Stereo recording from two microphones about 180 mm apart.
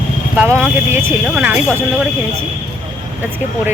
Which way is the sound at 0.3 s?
15° right (ahead or behind).